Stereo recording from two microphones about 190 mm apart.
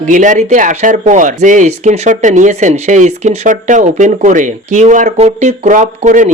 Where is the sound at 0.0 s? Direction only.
40° right (ahead or behind).